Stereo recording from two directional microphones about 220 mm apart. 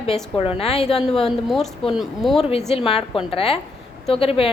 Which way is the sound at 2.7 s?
25° left (ahead or behind).